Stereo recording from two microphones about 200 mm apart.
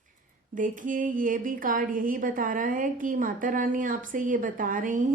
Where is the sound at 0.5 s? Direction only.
40° right (ahead or behind).